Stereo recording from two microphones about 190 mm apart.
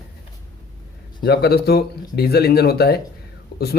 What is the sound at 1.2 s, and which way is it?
Speech, 60° left (ahead or behind).